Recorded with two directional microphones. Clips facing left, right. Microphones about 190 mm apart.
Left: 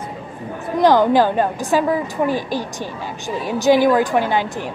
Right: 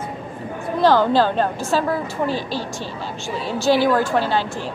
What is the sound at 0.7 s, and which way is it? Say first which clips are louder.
A woman's voice: left 2 dB; 15° left (ahead or behind).